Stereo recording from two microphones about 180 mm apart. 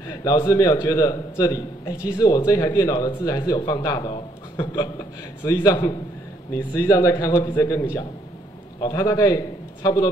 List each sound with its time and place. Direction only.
0.2 s a man's voice: 20° left (ahead or behind)